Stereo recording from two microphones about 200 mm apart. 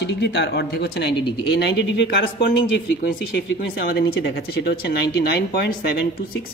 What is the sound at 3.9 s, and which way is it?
Speech, 55° left (ahead or behind).